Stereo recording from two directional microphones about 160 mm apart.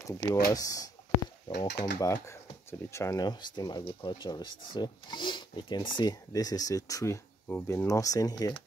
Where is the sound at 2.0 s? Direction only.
20° left (ahead or behind).